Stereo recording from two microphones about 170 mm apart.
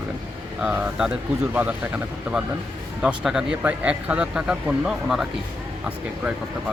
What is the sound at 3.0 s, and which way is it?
Speech, 5° right (ahead or behind).